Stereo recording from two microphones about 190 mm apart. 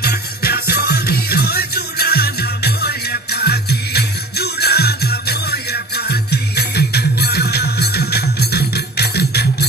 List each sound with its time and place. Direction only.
0.0 s music: 55° left (ahead or behind)